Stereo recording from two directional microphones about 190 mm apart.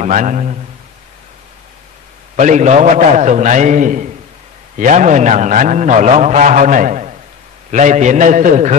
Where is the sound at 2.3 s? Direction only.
40° right (ahead or behind).